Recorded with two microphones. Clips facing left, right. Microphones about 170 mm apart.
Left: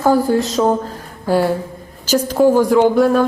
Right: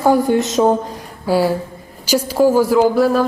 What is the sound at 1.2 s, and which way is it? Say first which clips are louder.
A woman's voice: even; 5° right (ahead or behind).